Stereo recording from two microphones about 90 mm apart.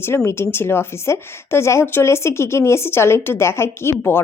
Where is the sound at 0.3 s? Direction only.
30° left (ahead or behind).